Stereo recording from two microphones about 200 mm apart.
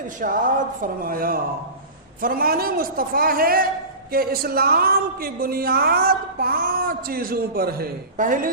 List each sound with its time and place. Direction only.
0.2 s a woman's voice: 40° right (ahead or behind)